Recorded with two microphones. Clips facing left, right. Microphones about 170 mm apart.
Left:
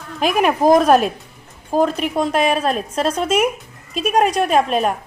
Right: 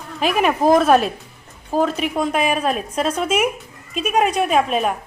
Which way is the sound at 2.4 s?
35° left (ahead or behind).